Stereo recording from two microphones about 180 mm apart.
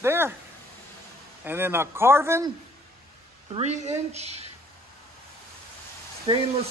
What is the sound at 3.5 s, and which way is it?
Speech, 40° right (ahead or behind).